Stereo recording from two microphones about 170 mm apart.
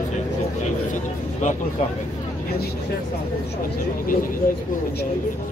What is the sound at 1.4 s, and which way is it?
Speech, 45° left (ahead or behind).